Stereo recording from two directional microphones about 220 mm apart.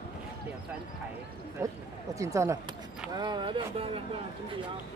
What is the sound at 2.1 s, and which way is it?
Speech, 15° right (ahead or behind).